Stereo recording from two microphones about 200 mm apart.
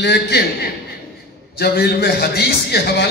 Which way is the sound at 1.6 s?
50° left (ahead or behind).